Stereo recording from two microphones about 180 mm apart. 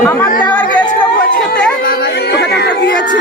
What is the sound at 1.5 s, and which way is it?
Speech, 60° left (ahead or behind).